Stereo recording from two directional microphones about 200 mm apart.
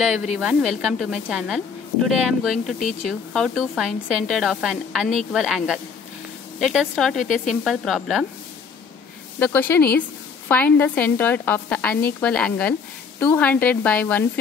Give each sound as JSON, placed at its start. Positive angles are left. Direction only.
{"t": 0.0, "sound": "speech", "side_deg": -5}
{"t": 2.8, "sound": "speech", "side_deg": 40}
{"t": 3.1, "sound": "speech", "side_deg": 0}
{"t": 9.4, "sound": "a woman's voice", "side_deg": 10}